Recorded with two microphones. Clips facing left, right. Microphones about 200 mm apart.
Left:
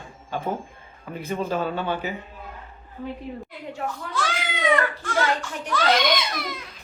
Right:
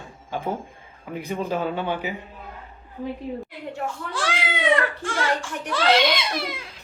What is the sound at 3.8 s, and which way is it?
A child's voice, 30° right (ahead or behind).